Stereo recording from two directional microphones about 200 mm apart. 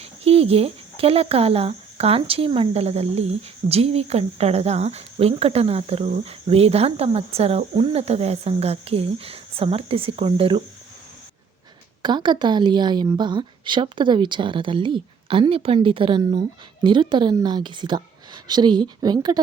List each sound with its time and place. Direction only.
0.0 s speech: 30° right (ahead or behind)
12.0 s a woman's voice: 20° right (ahead or behind)